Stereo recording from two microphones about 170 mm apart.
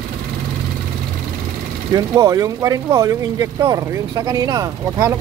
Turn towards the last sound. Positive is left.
turn(degrees=-20)  # may be behind; listen again after turning